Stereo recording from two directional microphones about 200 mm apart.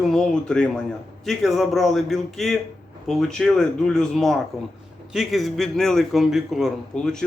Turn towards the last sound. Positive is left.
turn(degrees=5)  # may be behind; listen again after turning